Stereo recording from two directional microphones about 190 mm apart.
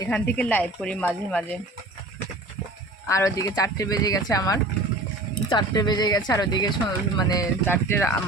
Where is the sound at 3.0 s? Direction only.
15° left (ahead or behind).